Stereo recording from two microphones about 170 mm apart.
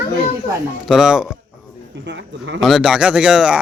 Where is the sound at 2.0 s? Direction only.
90° right.